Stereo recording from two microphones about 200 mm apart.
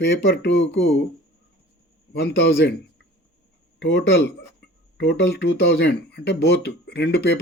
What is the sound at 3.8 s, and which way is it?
Speech, 60° left (ahead or behind).